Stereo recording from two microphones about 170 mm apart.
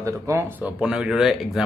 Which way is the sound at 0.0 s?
15° right (ahead or behind).